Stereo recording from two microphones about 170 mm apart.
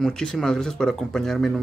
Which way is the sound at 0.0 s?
5° left (ahead or behind).